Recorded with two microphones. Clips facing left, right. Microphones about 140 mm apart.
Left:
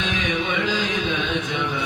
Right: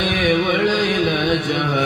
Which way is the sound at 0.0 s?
65° right (ahead or behind).